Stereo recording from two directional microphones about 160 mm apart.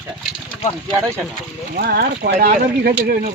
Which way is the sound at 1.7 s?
75° right (ahead or behind).